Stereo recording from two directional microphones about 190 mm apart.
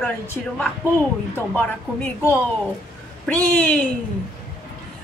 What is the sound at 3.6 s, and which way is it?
Speech, 10° left (ahead or behind).